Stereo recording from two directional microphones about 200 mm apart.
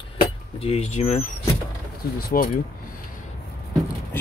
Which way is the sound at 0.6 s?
30° left (ahead or behind).